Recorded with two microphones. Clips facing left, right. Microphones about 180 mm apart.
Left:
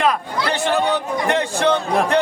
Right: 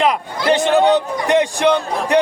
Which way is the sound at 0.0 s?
15° right (ahead or behind).